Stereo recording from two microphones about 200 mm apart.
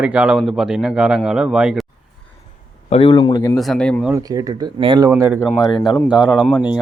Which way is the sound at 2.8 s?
30° left (ahead or behind).